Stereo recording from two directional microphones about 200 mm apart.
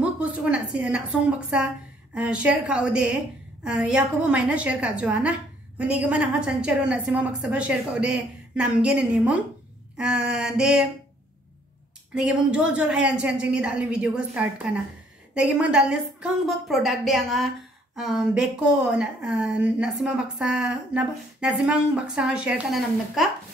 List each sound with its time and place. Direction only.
0.0 s a sound: 5° right (ahead or behind)
2.1 s a woman's voice: 5° right (ahead or behind)
12.1 s a woman's voice: 5° right (ahead or behind)